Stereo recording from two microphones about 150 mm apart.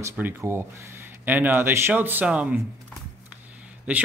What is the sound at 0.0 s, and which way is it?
Speech, 15° right (ahead or behind).